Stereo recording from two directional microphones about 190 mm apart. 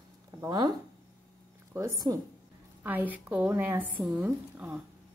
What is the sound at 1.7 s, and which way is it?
A woman's voice, 15° right (ahead or behind).